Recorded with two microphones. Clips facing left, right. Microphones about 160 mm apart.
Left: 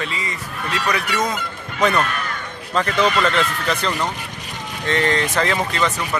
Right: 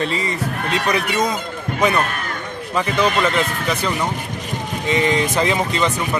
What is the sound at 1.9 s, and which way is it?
Speech, 45° right (ahead or behind).